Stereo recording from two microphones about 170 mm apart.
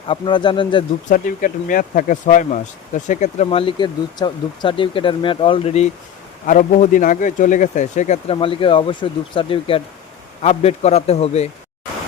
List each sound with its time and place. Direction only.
0.1 s speech: 30° left (ahead or behind)
1.1 s speech: 50° left (ahead or behind); by 5.8 s 35° left (ahead or behind)
6.4 s speech: 45° left (ahead or behind)